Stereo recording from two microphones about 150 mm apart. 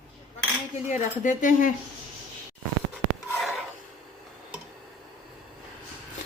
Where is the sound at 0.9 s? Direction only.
55° left (ahead or behind).